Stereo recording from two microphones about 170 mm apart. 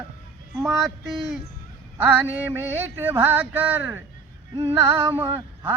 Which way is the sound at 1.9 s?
10° right (ahead or behind).